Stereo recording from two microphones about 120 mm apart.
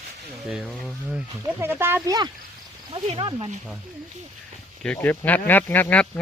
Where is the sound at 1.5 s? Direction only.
20° right (ahead or behind).